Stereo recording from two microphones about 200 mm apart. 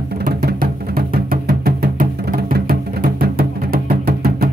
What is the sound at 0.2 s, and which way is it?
Music, 50° right (ahead or behind).